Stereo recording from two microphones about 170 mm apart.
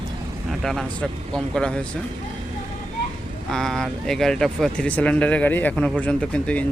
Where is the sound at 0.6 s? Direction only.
Centre (ahead or behind).